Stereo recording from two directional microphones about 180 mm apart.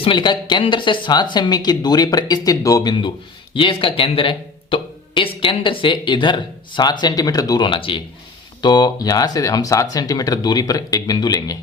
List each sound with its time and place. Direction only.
0.0 s speech: 25° left (ahead or behind)